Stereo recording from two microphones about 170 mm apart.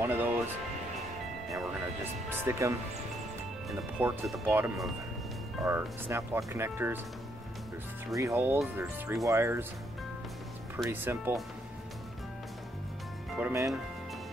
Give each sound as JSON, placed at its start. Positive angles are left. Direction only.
{"t": 0.0, "sound": "music", "side_deg": -10}
{"t": 2.2, "sound": "speech", "side_deg": -15}
{"t": 4.0, "sound": "speech", "side_deg": -5}
{"t": 8.1, "sound": "speech", "side_deg": -20}
{"t": 10.9, "sound": "speech", "side_deg": -10}
{"t": 13.4, "sound": "speech", "side_deg": -15}